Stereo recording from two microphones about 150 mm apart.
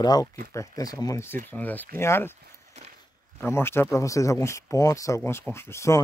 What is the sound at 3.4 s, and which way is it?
Speech, 15° left (ahead or behind).